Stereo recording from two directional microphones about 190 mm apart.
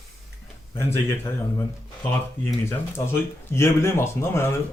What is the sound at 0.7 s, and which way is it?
Speech, 10° left (ahead or behind).